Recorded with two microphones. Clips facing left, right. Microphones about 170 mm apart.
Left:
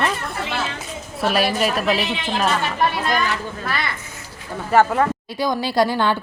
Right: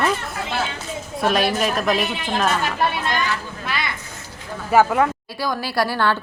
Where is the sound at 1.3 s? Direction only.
5° left (ahead or behind).